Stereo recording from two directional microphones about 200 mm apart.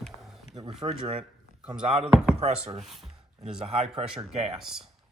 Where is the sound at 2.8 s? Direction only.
Centre (ahead or behind).